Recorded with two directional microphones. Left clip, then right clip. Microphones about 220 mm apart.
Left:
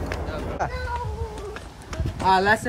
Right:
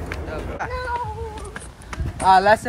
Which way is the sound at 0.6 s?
25° left (ahead or behind).